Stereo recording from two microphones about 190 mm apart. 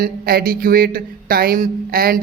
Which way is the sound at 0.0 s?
55° right (ahead or behind).